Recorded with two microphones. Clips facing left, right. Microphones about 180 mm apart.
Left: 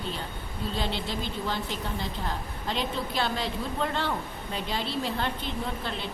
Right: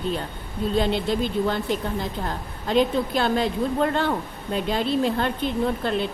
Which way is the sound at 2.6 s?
50° right (ahead or behind).